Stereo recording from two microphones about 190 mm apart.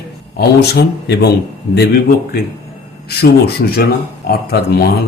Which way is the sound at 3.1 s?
55° left (ahead or behind).